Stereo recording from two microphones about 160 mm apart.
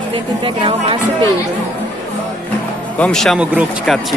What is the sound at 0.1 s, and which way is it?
Speech, 30° right (ahead or behind).